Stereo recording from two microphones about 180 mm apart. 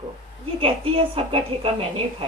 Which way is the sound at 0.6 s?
30° right (ahead or behind).